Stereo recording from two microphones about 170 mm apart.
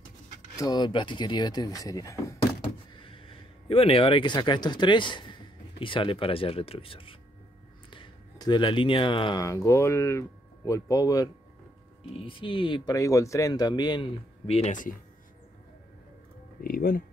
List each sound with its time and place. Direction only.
0.6 s speech: 25° left (ahead or behind)
3.0 s speech: 30° left (ahead or behind); by 15.0 s 50° left (ahead or behind)
16.6 s speech: 60° left (ahead or behind)